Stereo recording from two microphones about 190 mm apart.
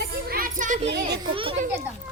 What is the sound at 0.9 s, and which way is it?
Speech, 60° right (ahead or behind).